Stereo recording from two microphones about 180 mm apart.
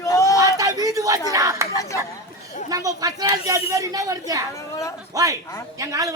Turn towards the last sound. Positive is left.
turn(degrees=-15)  # may be behind; listen again after turning